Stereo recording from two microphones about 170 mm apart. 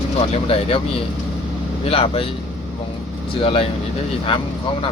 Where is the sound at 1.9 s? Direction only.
35° left (ahead or behind).